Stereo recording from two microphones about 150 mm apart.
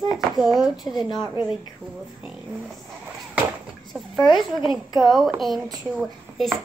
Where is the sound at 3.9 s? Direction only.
Centre (ahead or behind).